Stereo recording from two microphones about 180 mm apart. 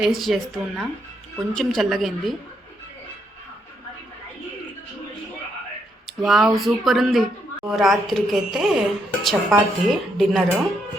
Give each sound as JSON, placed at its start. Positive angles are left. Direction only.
{"t": 0.0, "sound": "a woman's voice", "side_deg": 0}
{"t": 6.1, "sound": "a woman's voice", "side_deg": 0}